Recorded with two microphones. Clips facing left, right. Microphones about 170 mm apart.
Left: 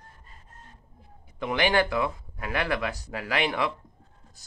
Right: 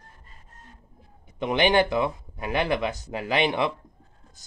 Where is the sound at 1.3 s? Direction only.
20° right (ahead or behind).